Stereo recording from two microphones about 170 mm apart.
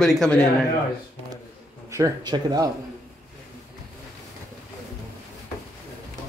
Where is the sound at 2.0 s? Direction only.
25° right (ahead or behind).